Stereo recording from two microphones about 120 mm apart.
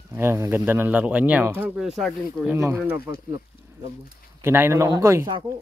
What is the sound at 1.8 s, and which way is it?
Speech, centre (ahead or behind).